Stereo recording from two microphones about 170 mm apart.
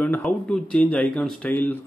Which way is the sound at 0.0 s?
10° left (ahead or behind).